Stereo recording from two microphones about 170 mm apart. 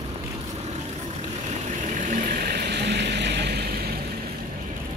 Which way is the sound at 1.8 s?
50° right (ahead or behind).